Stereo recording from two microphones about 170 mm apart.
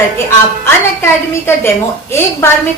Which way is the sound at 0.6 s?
15° left (ahead or behind).